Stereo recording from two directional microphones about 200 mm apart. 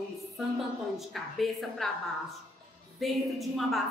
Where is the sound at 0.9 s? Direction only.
Centre (ahead or behind).